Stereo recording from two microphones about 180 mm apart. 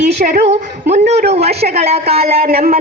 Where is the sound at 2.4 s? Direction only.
55° right (ahead or behind).